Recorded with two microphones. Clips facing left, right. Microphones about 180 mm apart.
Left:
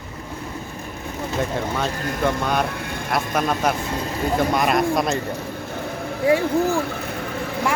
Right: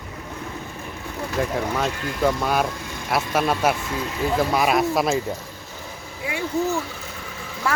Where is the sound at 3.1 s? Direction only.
5° right (ahead or behind).